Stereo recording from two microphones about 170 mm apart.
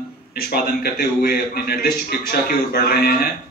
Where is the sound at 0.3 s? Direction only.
65° left (ahead or behind).